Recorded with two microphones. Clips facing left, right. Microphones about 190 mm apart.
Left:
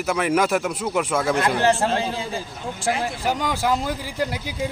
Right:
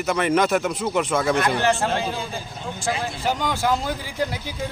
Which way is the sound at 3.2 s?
10° left (ahead or behind).